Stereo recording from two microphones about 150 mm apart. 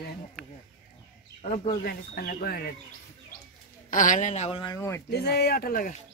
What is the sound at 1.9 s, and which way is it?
Speech, 90° left.